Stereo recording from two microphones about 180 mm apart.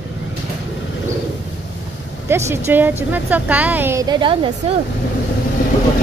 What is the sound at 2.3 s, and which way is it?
A woman's voice, 15° right (ahead or behind).